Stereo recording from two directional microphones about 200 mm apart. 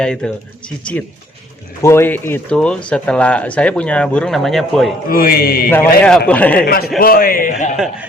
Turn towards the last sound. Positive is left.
turn(degrees=40)  # may be behind; listen again after turning